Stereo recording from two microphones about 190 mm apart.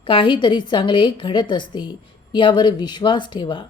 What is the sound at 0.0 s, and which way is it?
A woman's voice, 25° left (ahead or behind).